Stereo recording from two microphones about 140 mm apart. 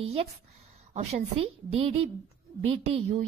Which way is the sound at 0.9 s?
50° right (ahead or behind).